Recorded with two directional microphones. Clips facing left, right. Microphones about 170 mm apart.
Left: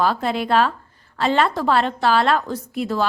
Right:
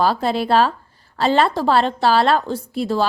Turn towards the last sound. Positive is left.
turn(degrees=-30)  # may be behind; listen again after turning